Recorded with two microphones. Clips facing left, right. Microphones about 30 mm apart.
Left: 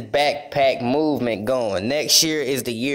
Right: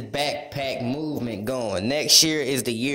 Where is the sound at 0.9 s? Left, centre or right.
Left.